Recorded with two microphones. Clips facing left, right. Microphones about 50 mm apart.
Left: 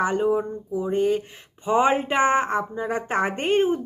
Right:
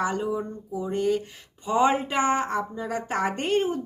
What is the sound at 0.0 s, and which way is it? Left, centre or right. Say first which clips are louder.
Speech: left 5 dB; left.